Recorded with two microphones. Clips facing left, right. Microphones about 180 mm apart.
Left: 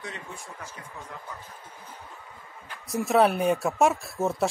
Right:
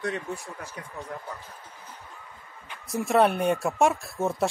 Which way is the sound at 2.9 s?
Centre (ahead or behind).